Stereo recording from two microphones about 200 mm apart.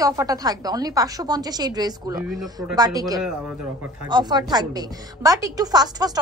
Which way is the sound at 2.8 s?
20° right (ahead or behind).